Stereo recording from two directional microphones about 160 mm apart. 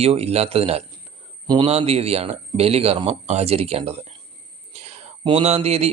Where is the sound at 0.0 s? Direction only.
40° right (ahead or behind).